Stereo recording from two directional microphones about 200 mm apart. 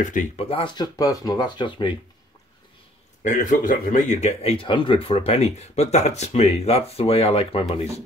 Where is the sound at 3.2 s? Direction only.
40° left (ahead or behind).